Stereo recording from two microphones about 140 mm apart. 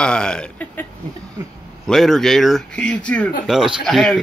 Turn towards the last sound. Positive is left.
turn(degrees=5)  # may be behind; listen again after turning